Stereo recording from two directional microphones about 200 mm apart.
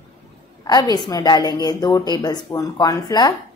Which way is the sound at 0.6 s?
20° left (ahead or behind).